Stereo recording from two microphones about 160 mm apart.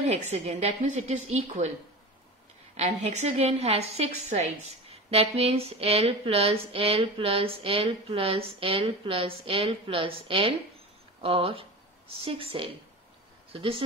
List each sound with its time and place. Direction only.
0.0 s a woman's voice: 45° right (ahead or behind)
2.8 s a woman's voice: 45° right (ahead or behind)